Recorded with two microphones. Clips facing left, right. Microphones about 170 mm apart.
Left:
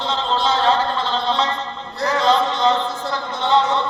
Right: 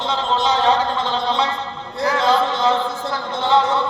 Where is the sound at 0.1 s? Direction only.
10° right (ahead or behind).